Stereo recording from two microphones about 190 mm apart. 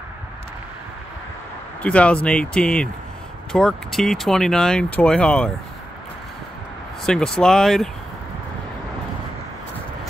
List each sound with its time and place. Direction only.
1.8 s speech: 5° left (ahead or behind)
7.1 s speech: 5° left (ahead or behind)